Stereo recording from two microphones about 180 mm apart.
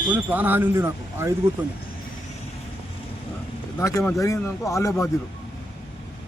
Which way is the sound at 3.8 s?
15° left (ahead or behind).